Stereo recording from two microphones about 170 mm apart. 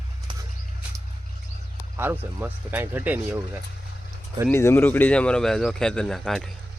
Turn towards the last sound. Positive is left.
turn(degrees=5)  # may be behind; listen again after turning